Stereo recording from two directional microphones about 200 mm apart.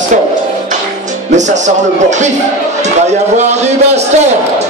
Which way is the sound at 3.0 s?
35° right (ahead or behind).